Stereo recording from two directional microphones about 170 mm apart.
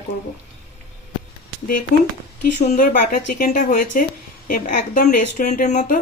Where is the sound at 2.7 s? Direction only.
50° left (ahead or behind).